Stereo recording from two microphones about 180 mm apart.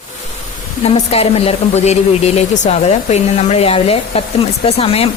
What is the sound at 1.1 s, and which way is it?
Speech, 35° left (ahead or behind).